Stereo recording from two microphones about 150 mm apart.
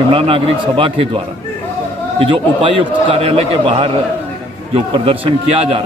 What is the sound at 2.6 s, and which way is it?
A man's voice, 35° right (ahead or behind).